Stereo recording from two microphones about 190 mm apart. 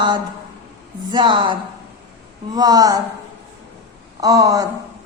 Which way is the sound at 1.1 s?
25° right (ahead or behind).